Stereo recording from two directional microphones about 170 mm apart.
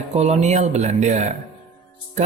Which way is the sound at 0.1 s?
40° right (ahead or behind).